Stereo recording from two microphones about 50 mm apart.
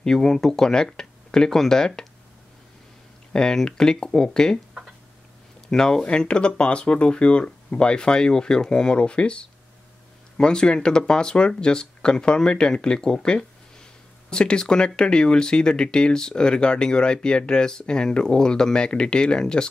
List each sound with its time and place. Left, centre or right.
0.0 s speech: centre
3.3 s speech: centre
5.7 s speech: centre